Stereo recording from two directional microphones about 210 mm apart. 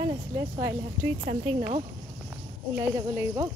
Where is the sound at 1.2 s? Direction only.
25° right (ahead or behind).